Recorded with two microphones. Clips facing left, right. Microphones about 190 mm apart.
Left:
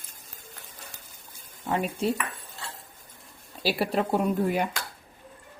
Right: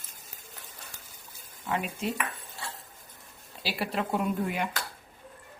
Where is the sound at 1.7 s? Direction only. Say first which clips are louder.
Left 4 dB; 35° left (ahead or behind).